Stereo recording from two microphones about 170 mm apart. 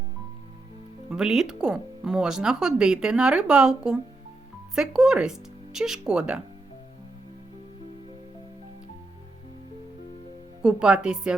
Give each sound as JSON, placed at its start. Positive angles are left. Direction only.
{"t": 1.1, "sound": "speech", "side_deg": -5}
{"t": 10.6, "sound": "speech", "side_deg": -5}